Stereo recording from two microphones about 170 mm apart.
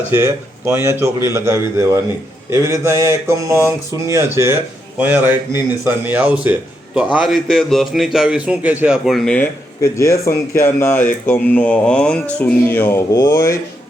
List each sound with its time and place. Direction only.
0.1 s a man's voice: 15° right (ahead or behind); by 9.5 s 5° left (ahead or behind)
10.0 s speech: 15° left (ahead or behind)